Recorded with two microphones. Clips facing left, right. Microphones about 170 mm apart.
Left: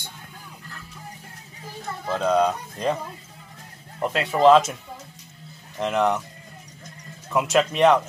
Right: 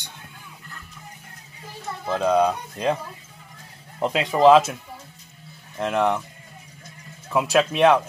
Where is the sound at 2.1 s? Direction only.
10° right (ahead or behind).